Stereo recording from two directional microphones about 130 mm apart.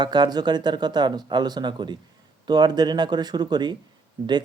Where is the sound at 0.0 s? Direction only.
35° right (ahead or behind).